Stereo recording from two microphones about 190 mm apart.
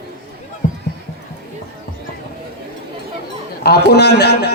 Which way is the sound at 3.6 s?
60° left (ahead or behind).